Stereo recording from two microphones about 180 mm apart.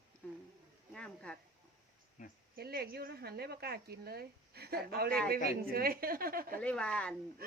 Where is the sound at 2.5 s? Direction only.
60° right (ahead or behind).